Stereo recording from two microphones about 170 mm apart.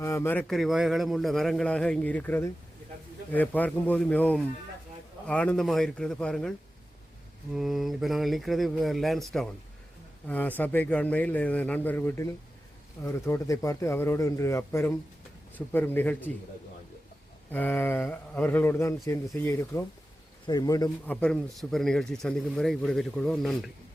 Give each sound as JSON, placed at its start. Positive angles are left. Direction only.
{"t": 0.0, "sound": "a man's voice", "side_deg": 15}
{"t": 7.5, "sound": "speech", "side_deg": 0}
{"t": 10.2, "sound": "a man's voice", "side_deg": 10}
{"t": 17.5, "sound": "a man's voice", "side_deg": 10}
{"t": 21.1, "sound": "speech", "side_deg": 5}